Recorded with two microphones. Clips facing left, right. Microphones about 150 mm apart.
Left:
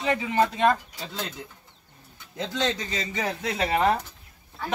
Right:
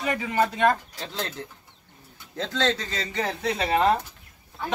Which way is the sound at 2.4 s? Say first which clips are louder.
Right 2 dB; 15° left (ahead or behind).